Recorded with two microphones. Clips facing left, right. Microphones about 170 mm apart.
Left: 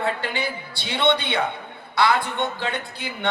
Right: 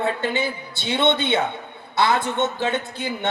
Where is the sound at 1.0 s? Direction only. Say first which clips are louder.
Right 1 dB; 20° right (ahead or behind).